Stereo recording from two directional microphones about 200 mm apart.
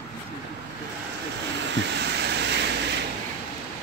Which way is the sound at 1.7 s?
60° right (ahead or behind).